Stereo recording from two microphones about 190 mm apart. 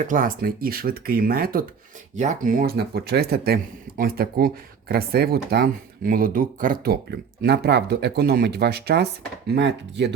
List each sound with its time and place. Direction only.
0.0 s speech: 45° right (ahead or behind)
2.1 s speech: 40° right (ahead or behind); by 10.1 s 65° right (ahead or behind)